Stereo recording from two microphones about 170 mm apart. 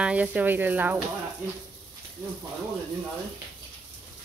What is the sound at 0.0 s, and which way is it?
Speech, 10° right (ahead or behind).